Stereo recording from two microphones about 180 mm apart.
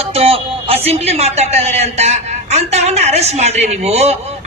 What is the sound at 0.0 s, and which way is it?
Music, 35° right (ahead or behind).